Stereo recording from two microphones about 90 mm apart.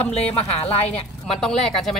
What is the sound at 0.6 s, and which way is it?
Speech, 90° left.